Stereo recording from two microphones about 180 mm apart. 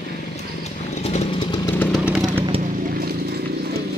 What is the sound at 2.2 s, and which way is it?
Vehicle, 25° right (ahead or behind).